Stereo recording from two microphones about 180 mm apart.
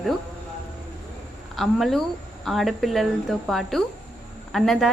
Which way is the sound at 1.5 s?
Centre (ahead or behind).